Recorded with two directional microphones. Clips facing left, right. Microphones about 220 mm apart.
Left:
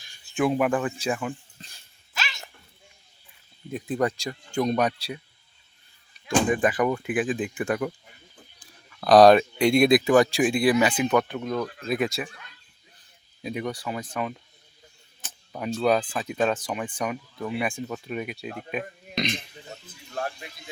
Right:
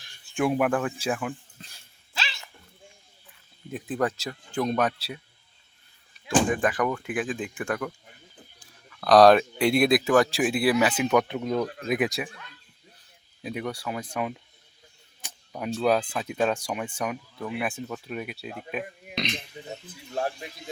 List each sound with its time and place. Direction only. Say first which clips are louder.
0.4 s speech: left 1 dB; 5° right (ahead or behind)
2.1 s dog: left 1 dB; 30° right (ahead or behind)
3.7 s speech: left 2 dB; 5° right (ahead or behind)
6.2 s speech: left 1 dB; centre (ahead or behind)
9.0 s speech: left 2 dB; centre (ahead or behind); by 12.3 s 15° right (ahead or behind)
13.4 s speech: left 1 dB; 5° right (ahead or behind)
15.5 s speech: left 1 dB; 5° right (ahead or behind)
19.7 s speech: right 2 dB; 20° right (ahead or behind)